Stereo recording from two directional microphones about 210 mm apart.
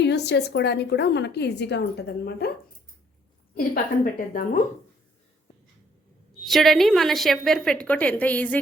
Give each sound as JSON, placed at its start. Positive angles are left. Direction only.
{"t": 0.0, "sound": "a woman's voice", "side_deg": 55}
{"t": 3.6, "sound": "a woman's voice", "side_deg": 40}
{"t": 6.4, "sound": "a woman's voice", "side_deg": 0}